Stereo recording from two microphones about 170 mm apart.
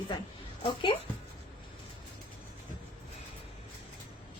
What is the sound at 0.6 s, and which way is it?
Speech, 30° left (ahead or behind).